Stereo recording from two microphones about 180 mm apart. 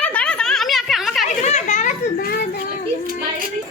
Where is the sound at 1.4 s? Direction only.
40° left (ahead or behind).